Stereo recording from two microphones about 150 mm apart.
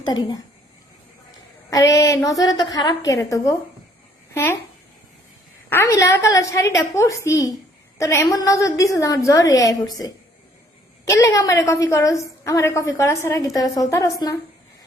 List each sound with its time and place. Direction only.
0.0 s a woman's voice: 30° left (ahead or behind)
1.7 s a woman's voice: 20° left (ahead or behind)
5.6 s a woman's voice: 15° left (ahead or behind)